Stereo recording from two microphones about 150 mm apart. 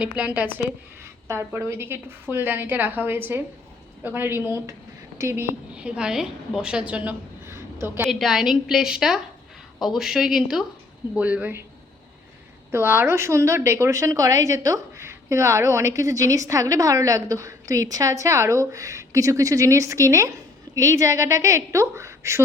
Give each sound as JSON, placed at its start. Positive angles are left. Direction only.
{"t": 0.0, "sound": "a woman's voice", "side_deg": -10}
{"t": 8.1, "sound": "a woman's voice", "side_deg": 0}
{"t": 12.7, "sound": "speech", "side_deg": -15}